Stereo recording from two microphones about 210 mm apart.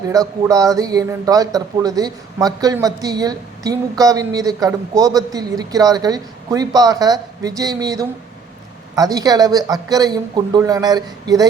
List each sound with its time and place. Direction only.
0.1 s speech: 15° right (ahead or behind)